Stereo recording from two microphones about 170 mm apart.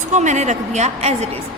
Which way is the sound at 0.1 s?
45° right (ahead or behind).